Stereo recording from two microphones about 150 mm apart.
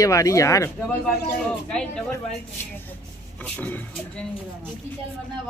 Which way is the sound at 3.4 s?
10° left (ahead or behind).